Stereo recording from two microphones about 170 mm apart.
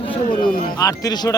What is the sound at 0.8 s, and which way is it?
Speech, 20° left (ahead or behind).